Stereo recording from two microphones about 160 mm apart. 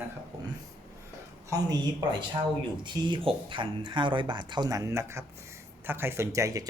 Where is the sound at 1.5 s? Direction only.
25° right (ahead or behind).